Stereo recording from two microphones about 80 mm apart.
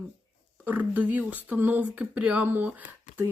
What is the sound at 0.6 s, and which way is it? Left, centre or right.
Speech, right.